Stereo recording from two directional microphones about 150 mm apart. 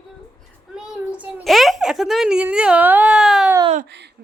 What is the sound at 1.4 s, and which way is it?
Speech, centre (ahead or behind).